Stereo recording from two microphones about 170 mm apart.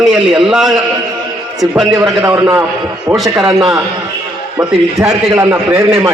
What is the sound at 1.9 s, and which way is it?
Speech, 15° right (ahead or behind).